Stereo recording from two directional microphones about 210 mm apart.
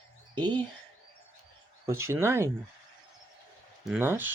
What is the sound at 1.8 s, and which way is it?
Speech, 15° right (ahead or behind).